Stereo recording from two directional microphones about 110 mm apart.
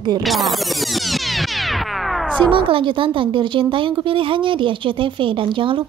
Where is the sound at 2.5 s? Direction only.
50° right (ahead or behind).